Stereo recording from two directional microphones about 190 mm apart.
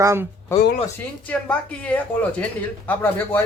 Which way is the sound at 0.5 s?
15° left (ahead or behind).